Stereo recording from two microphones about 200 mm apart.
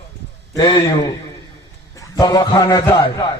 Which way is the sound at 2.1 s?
20° left (ahead or behind).